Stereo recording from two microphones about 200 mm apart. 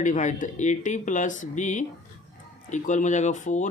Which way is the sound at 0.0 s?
40° left (ahead or behind).